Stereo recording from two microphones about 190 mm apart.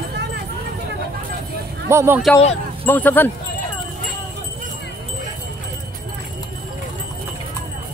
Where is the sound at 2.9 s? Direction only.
10° left (ahead or behind).